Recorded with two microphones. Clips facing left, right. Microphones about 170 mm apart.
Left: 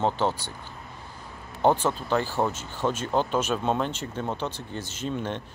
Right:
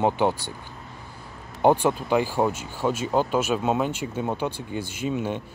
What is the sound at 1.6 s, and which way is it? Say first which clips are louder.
Speech: right 3 dB; 10° right (ahead or behind).